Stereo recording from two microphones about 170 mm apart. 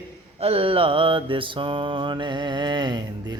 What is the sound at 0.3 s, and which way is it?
Mantra, 35° right (ahead or behind).